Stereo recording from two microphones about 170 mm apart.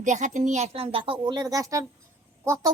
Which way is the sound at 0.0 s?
45° right (ahead or behind).